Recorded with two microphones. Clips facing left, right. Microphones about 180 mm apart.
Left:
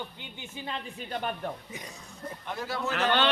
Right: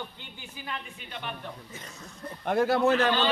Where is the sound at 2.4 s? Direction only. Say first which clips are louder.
Right 11 dB; 55° right (ahead or behind).